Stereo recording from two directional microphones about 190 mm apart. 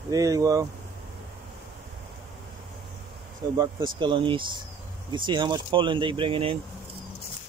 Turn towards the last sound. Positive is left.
turn(degrees=-25)  # may be behind; listen again after turning